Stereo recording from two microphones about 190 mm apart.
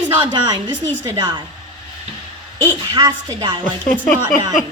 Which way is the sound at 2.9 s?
20° right (ahead or behind).